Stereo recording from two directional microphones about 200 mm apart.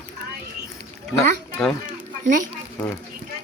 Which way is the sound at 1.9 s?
40° right (ahead or behind).